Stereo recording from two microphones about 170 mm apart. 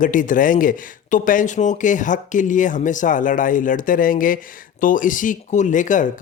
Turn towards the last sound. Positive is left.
turn(degrees=50)  # may be behind; listen again after turning